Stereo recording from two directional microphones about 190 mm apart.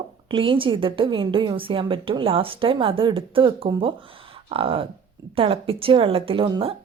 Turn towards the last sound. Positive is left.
turn(degrees=-30)  # may be behind; listen again after turning